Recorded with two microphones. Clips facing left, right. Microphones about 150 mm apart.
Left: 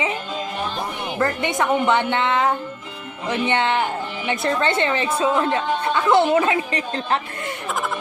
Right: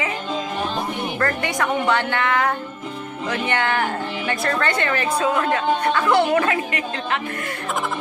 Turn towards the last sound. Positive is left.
turn(degrees=35)  # may be behind; listen again after turning